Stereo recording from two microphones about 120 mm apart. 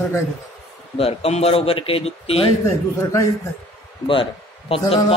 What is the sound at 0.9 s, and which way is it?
A man's voice, 55° left (ahead or behind).